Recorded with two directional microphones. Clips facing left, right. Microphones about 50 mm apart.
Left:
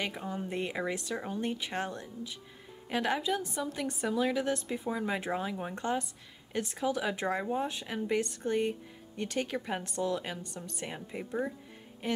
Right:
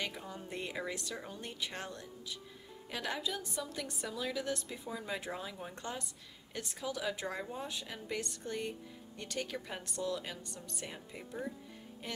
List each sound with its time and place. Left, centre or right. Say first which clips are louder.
0.0 s a woman's voice: left 6 dB; left